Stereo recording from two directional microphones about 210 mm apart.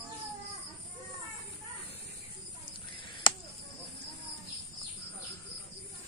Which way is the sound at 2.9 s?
25° left (ahead or behind).